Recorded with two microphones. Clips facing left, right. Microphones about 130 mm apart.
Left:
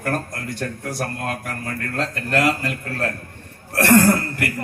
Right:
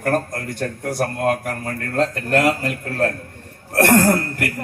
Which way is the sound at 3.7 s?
45° right (ahead or behind).